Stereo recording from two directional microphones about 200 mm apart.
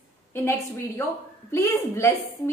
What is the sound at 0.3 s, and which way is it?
A woman's voice, 10° left (ahead or behind).